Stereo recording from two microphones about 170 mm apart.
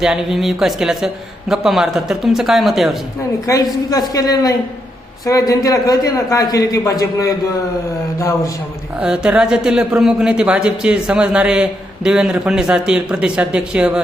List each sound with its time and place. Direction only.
0.0 s a man's voice: centre (ahead or behind)
3.4 s a man's voice: 20° left (ahead or behind)
9.0 s a man's voice: 5° right (ahead or behind)